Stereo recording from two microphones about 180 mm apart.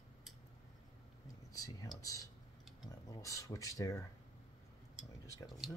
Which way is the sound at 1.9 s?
20° left (ahead or behind).